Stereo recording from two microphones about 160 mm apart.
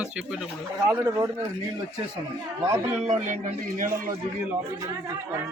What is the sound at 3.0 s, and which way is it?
Speech, 45° right (ahead or behind).